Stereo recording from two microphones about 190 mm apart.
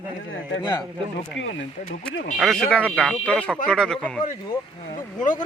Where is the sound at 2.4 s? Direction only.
Centre (ahead or behind).